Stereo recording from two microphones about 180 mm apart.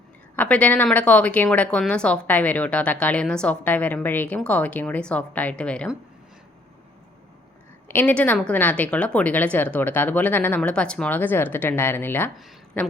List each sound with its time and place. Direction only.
0.3 s speech: 5° left (ahead or behind)
7.9 s speech: 10° left (ahead or behind)